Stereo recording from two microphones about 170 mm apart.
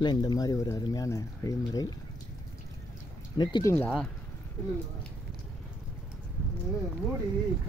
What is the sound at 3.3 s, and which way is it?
Speech, 25° left (ahead or behind).